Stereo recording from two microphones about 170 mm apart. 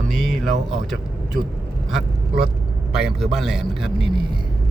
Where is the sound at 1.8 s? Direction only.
Centre (ahead or behind).